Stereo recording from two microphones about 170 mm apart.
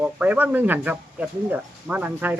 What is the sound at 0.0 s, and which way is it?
Speech, 10° right (ahead or behind).